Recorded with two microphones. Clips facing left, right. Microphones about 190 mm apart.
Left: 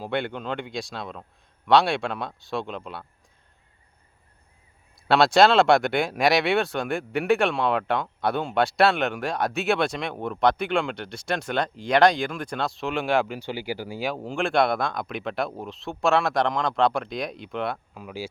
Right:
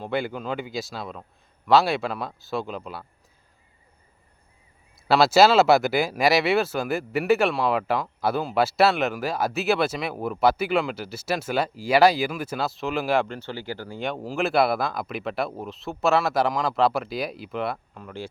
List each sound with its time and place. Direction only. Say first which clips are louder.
0.0 s speech: right 1 dB; centre (ahead or behind)
5.0 s speech: right 1 dB; centre (ahead or behind)